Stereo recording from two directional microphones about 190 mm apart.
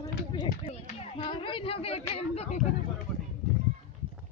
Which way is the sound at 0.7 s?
30° left (ahead or behind).